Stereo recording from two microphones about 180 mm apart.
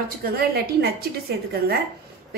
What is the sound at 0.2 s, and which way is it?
Speech, 60° right (ahead or behind).